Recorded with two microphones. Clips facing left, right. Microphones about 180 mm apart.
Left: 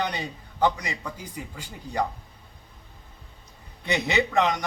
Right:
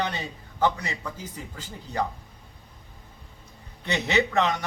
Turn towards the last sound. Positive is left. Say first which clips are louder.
# even
turn(degrees=15)  # may be behind; listen again after turning